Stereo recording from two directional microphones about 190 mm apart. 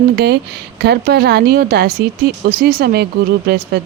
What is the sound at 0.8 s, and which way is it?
Speech, 60° right (ahead or behind).